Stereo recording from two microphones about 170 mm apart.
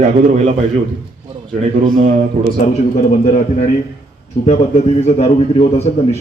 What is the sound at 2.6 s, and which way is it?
A man's voice, 40° left (ahead or behind).